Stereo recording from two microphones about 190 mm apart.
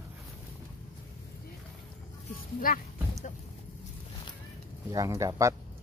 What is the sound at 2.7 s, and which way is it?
Speech, 50° left (ahead or behind).